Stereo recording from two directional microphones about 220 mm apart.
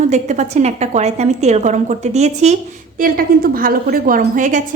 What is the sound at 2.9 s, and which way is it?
A woman's voice, 40° right (ahead or behind).